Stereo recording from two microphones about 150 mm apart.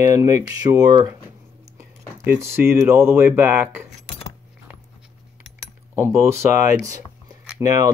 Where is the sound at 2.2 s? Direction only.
15° right (ahead or behind).